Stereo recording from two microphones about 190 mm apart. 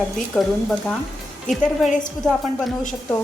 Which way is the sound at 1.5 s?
40° left (ahead or behind).